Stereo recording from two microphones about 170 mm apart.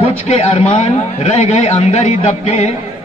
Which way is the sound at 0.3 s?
40° left (ahead or behind).